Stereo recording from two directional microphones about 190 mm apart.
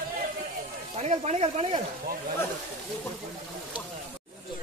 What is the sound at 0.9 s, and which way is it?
Speech, 35° right (ahead or behind).